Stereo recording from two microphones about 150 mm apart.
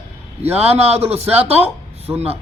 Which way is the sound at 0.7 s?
45° right (ahead or behind).